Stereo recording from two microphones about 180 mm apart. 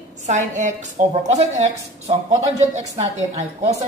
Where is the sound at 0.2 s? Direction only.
45° right (ahead or behind).